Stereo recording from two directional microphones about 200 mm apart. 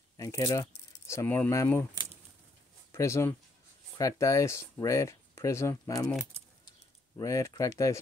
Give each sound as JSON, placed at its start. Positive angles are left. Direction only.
{"t": 0.2, "sound": "speech", "side_deg": 15}
{"t": 2.9, "sound": "speech", "side_deg": 15}
{"t": 7.2, "sound": "speech", "side_deg": 15}